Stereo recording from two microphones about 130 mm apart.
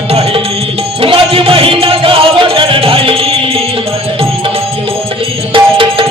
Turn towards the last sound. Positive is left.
turn(degrees=-40)  # may be behind; listen again after turning